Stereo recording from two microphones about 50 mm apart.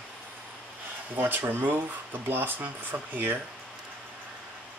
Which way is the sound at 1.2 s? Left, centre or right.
Right.